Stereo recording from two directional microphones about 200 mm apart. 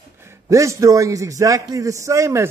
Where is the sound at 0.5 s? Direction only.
15° right (ahead or behind).